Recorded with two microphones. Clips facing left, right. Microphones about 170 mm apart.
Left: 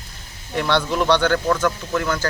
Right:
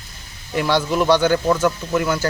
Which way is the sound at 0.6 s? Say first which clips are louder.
Right 2 dB; 10° right (ahead or behind).